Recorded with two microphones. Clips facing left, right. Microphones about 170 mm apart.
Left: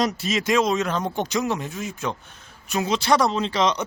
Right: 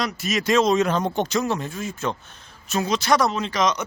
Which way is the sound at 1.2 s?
15° left (ahead or behind).